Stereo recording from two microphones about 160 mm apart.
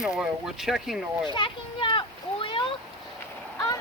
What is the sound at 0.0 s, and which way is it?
Speech, 5° right (ahead or behind).